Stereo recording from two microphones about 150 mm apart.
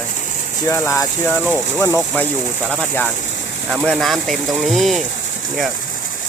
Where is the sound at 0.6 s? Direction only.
20° left (ahead or behind); by 5.0 s centre (ahead or behind).